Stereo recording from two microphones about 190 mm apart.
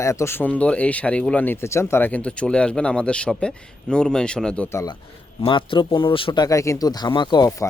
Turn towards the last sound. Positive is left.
turn(degrees=15)  # may be behind; listen again after turning